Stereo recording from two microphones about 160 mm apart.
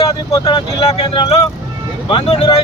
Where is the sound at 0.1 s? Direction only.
30° left (ahead or behind).